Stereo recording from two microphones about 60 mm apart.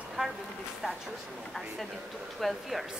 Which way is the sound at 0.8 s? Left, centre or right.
Centre.